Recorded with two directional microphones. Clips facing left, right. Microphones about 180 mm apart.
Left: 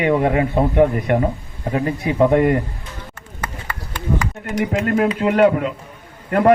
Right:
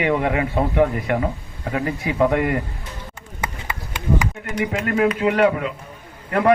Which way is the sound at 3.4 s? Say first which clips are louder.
Even; 10° right (ahead or behind).